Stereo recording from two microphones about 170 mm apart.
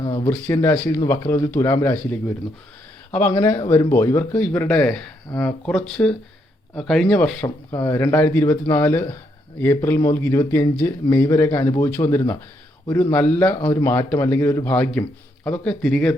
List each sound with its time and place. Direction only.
0.0 s speech: 25° left (ahead or behind)
0.3 s speech: 15° left (ahead or behind)
7.4 s speech: 20° left (ahead or behind)